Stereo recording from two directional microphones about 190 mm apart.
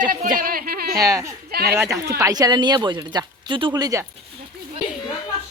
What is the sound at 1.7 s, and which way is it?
Speech, 15° right (ahead or behind).